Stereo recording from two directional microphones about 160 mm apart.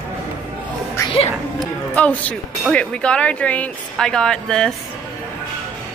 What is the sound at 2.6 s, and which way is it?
Speech, 5° left (ahead or behind).